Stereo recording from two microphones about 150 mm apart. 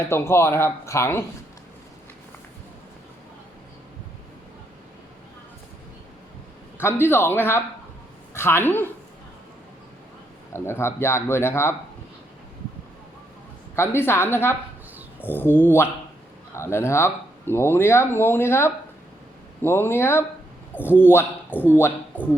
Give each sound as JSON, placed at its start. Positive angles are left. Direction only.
{"t": 0.0, "sound": "speech", "side_deg": 15}
{"t": 6.7, "sound": "a woman's voice", "side_deg": 15}
{"t": 10.5, "sound": "speech", "side_deg": 15}
{"t": 13.7, "sound": "speech", "side_deg": 15}